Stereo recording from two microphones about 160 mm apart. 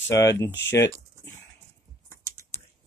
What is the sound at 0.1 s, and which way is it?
Speech, 90° left.